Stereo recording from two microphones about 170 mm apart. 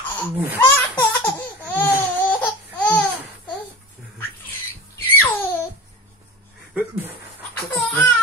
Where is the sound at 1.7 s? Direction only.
10° left (ahead or behind).